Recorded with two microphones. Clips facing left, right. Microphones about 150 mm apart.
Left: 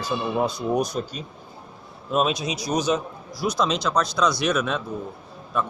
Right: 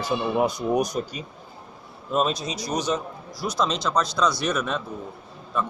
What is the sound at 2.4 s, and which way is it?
Speech, 15° left (ahead or behind).